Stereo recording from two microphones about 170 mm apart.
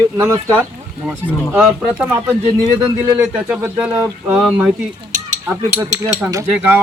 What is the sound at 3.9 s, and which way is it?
Speech, 20° right (ahead or behind).